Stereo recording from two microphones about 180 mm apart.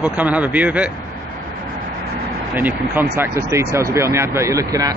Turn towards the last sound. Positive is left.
turn(degrees=-20)  # may be behind; listen again after turning